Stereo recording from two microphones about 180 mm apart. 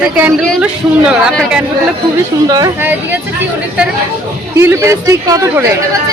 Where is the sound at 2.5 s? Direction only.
20° right (ahead or behind).